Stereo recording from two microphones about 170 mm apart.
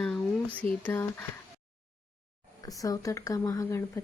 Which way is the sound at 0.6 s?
10° left (ahead or behind).